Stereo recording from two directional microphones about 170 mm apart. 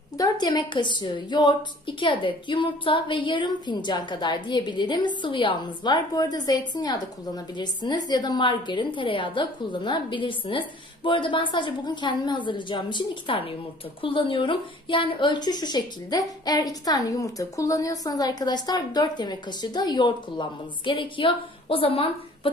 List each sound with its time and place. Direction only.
0.2 s a woman's voice: 25° left (ahead or behind)